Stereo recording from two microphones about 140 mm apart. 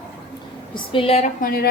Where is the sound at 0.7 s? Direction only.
35° left (ahead or behind).